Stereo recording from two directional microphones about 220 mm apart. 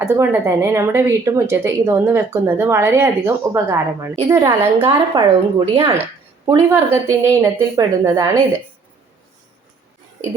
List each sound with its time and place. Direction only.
0.0 s a woman's voice: 10° right (ahead or behind)